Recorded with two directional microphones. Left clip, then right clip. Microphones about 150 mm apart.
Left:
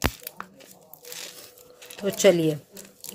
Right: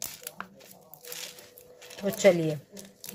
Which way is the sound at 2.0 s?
50° left (ahead or behind).